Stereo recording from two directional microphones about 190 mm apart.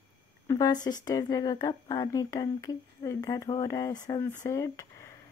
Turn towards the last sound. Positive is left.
turn(degrees=15)  # may be behind; listen again after turning